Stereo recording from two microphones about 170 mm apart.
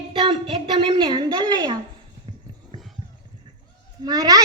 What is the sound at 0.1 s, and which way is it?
A woman's voice, 30° right (ahead or behind).